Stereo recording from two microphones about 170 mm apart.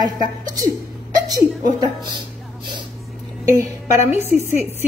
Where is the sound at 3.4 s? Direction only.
15° right (ahead or behind).